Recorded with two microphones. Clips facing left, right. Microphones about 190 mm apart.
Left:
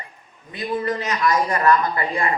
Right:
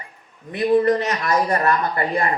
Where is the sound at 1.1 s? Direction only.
40° right (ahead or behind).